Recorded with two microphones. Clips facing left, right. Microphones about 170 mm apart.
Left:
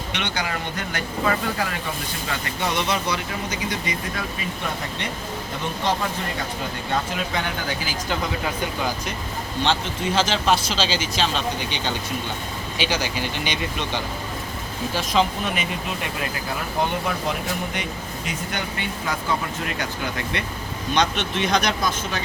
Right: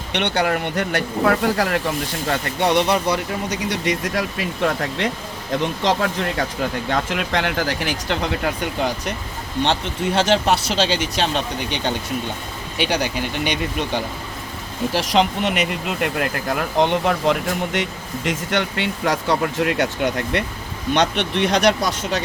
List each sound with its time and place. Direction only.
0.1 s speech: 60° right (ahead or behind)
10.2 s speech: 60° right (ahead or behind)
12.8 s speech: 60° right (ahead or behind)
14.9 s speech: 75° right (ahead or behind)